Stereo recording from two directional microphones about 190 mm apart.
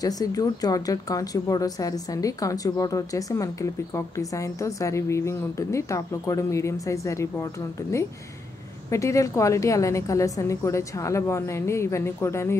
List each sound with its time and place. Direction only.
0.0 s a woman's voice: 20° left (ahead or behind)
8.9 s a woman's voice: 15° left (ahead or behind)